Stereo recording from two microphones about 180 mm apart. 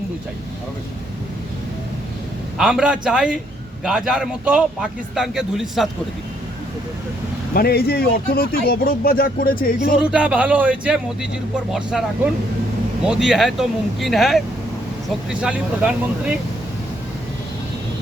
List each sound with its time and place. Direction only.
2.6 s a man's voice: 5° right (ahead or behind)
7.5 s speech: 60° left (ahead or behind)
10.0 s a man's voice: 5° right (ahead or behind)